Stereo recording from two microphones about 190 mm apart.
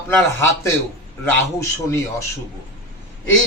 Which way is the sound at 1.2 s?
15° left (ahead or behind).